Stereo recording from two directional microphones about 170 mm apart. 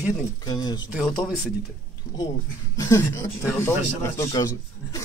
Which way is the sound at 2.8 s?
15° left (ahead or behind).